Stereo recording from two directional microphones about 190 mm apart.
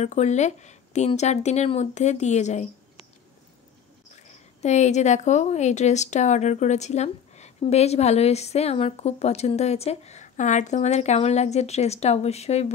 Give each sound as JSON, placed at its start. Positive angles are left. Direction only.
{"t": 0.0, "sound": "a woman's voice", "side_deg": 35}
{"t": 4.1, "sound": "a woman's voice", "side_deg": 35}